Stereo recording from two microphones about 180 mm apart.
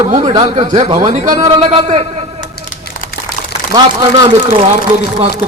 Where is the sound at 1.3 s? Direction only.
20° right (ahead or behind).